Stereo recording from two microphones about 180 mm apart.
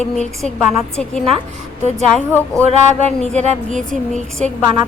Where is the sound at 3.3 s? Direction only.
40° right (ahead or behind).